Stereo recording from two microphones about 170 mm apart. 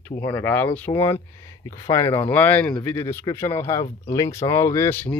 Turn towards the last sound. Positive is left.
turn(degrees=10)  # may be behind; listen again after turning